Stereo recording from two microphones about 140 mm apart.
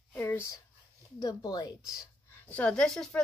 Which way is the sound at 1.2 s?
30° left (ahead or behind).